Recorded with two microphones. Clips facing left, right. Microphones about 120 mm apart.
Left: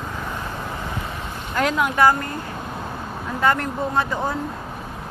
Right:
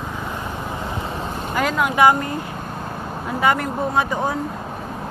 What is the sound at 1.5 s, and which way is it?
Boat, centre (ahead or behind).